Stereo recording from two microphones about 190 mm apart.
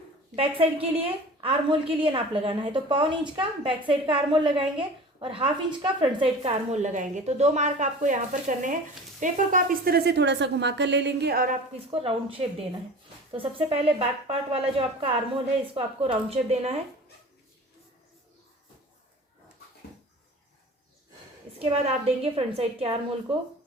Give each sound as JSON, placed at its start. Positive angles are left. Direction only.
{"t": 0.3, "sound": "a woman's voice", "side_deg": -30}
{"t": 11.9, "sound": "a woman's voice", "side_deg": -30}
{"t": 21.6, "sound": "a woman's voice", "side_deg": -30}